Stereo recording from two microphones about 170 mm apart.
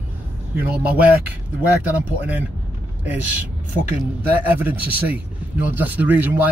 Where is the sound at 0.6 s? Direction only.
10° right (ahead or behind).